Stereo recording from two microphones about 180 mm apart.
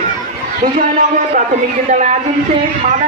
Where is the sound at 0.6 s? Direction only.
45° right (ahead or behind).